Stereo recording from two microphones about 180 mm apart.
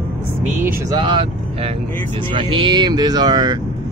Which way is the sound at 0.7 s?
20° right (ahead or behind).